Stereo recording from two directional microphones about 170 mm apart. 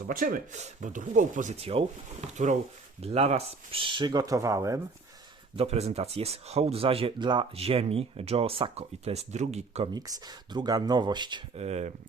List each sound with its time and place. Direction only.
0.1 s speech: 55° right (ahead or behind); by 4.8 s 20° right (ahead or behind)
5.5 s speech: 40° right (ahead or behind)
9.9 s speech: 25° right (ahead or behind)
11.5 s speech: 40° right (ahead or behind)